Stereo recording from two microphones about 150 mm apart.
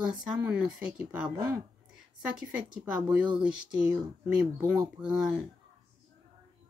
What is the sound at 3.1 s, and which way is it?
Speech, 10° right (ahead or behind).